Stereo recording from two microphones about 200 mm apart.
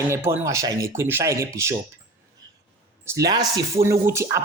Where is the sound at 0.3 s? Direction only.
15° right (ahead or behind).